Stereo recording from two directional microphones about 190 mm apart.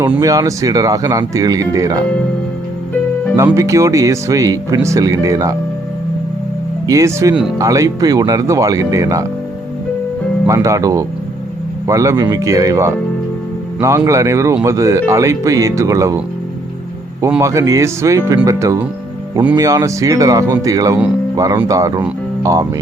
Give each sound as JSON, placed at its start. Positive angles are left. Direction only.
{"t": 0.2, "sound": "speech", "side_deg": -20}
{"t": 3.3, "sound": "speech", "side_deg": -15}
{"t": 6.8, "sound": "speech", "side_deg": -15}
{"t": 10.4, "sound": "speech", "side_deg": -15}
{"t": 17.3, "sound": "speech", "side_deg": -15}